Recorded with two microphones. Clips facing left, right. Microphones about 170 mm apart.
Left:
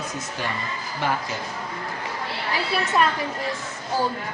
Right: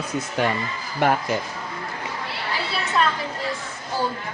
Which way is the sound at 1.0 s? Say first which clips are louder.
Right 6 dB; 55° right (ahead or behind).